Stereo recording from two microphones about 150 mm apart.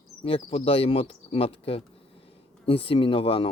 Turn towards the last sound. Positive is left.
turn(degrees=40)  # may be behind; listen again after turning